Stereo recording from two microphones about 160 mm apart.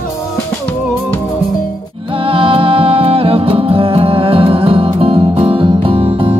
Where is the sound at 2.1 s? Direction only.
35° right (ahead or behind).